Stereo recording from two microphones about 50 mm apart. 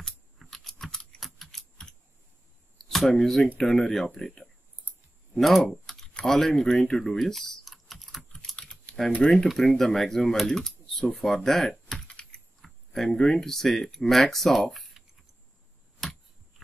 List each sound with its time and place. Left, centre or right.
0.4 s typing: centre
2.8 s speech: centre
5.3 s speech: centre
5.6 s speech: centre
8.2 s typing: centre
9.3 s speech: centre
12.1 s computer keyboard: centre
12.6 s speech: centre
16.0 s a sound: centre